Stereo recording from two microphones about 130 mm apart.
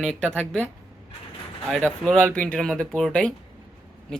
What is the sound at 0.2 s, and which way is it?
Speech, 5° left (ahead or behind).